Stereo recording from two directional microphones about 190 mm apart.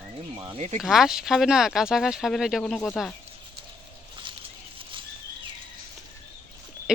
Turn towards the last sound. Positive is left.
turn(degrees=-5)  # may be behind; listen again after turning